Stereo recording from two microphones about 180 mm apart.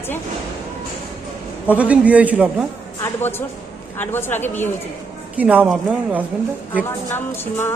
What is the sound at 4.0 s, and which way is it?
Speech, 10° left (ahead or behind).